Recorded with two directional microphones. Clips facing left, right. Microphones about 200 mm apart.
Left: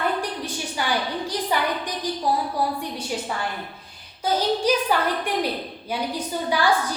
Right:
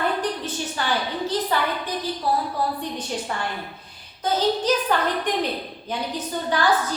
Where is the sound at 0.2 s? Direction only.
10° left (ahead or behind).